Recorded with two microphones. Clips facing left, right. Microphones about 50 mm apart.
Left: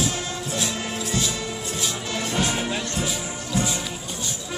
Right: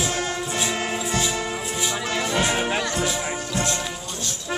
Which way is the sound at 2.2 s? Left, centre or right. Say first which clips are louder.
Right 2 dB; right.